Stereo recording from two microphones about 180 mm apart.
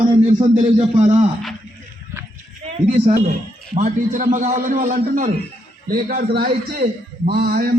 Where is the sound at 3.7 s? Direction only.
45° right (ahead or behind).